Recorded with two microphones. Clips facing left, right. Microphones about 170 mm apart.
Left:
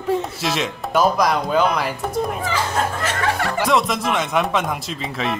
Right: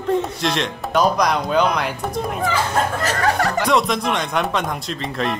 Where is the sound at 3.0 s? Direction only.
40° right (ahead or behind).